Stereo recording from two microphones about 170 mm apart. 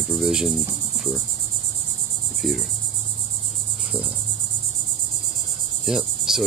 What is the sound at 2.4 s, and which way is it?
Cricket, centre (ahead or behind).